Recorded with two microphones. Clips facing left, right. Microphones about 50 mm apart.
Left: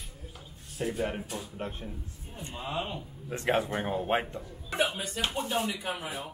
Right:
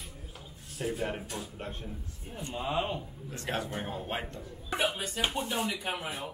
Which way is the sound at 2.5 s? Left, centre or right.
Centre.